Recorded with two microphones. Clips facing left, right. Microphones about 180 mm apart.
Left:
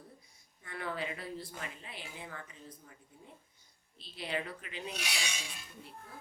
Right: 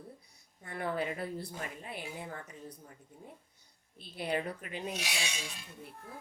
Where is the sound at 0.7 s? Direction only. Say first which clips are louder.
Right 4 dB; 45° right (ahead or behind).